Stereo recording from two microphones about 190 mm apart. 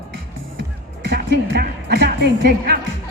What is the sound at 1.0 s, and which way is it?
Music, 60° right (ahead or behind).